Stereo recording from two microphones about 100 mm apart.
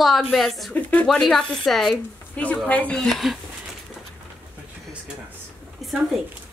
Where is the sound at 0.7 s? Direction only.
15° left (ahead or behind).